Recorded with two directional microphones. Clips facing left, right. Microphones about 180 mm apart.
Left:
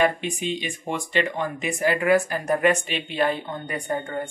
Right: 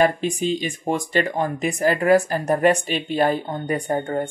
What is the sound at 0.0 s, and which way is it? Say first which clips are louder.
Speech: right 4 dB; 40° right (ahead or behind).